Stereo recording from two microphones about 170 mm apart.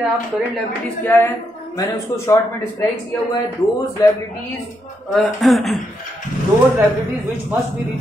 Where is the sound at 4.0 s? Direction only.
20° left (ahead or behind).